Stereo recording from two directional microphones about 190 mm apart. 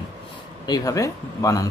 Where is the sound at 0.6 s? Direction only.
20° left (ahead or behind).